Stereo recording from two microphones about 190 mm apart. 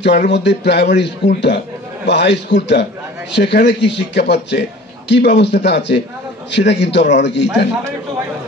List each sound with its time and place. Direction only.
0.3 s a man's voice: 65° left (ahead or behind)